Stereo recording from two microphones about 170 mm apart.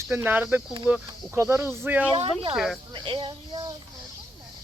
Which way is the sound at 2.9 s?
30° right (ahead or behind).